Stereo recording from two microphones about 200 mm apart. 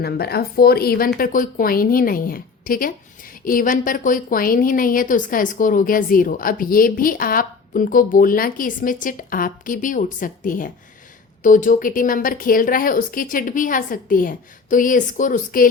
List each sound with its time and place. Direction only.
0.0 s a woman's voice: 50° left (ahead or behind)